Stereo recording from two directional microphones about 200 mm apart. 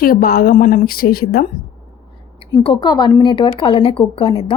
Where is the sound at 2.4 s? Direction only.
30° left (ahead or behind).